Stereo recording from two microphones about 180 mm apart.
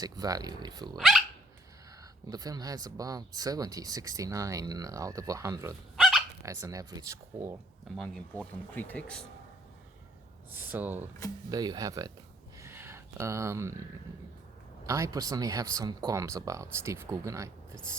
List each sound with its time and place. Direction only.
0.0 s speech: 20° right (ahead or behind)
0.9 s speech: centre (ahead or behind)
2.2 s speech: 20° right (ahead or behind)
6.0 s dog: centre (ahead or behind)
6.4 s speech: 15° right (ahead or behind)
7.9 s speech: 5° left (ahead or behind)
10.5 s speech: 10° right (ahead or behind)
11.4 s speech: 20° right (ahead or behind)
12.5 s a sound: 15° right (ahead or behind)
14.8 s speech: 15° right (ahead or behind)